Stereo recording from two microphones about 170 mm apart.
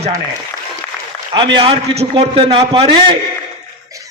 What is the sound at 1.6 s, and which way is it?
A man's voice, 35° right (ahead or behind).